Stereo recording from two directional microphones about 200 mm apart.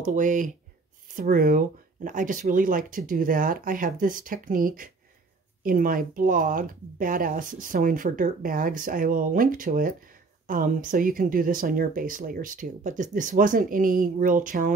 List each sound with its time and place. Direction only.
0.0 s speech: 40° right (ahead or behind)